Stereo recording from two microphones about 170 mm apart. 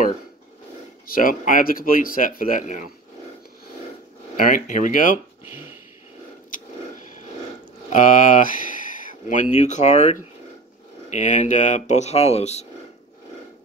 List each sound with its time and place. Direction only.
1.0 s speech: 55° left (ahead or behind)
4.4 s speech: 50° left (ahead or behind)
6.5 s a sound: 50° left (ahead or behind)
7.9 s speech: 50° left (ahead or behind)